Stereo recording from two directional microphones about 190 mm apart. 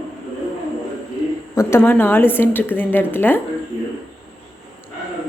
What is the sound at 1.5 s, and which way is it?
A woman's voice, 10° left (ahead or behind).